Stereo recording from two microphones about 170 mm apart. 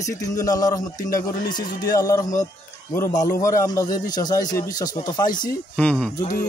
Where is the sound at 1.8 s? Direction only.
20° left (ahead or behind).